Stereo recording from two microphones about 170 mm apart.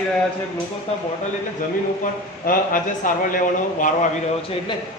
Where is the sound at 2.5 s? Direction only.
55° left (ahead or behind).